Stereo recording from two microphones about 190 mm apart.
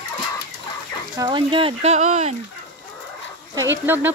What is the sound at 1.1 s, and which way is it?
Speech, 25° right (ahead or behind).